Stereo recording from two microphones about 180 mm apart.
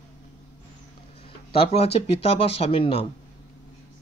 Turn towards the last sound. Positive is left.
turn(degrees=30)  # may be behind; listen again after turning